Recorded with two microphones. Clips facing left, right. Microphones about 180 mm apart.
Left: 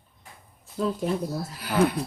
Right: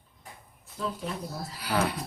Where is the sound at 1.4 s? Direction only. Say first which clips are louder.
Left 1 dB; 45° left (ahead or behind).